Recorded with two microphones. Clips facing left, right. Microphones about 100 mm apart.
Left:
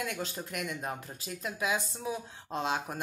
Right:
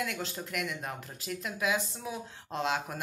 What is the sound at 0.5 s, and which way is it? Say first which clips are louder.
Speech: even; 35° left (ahead or behind).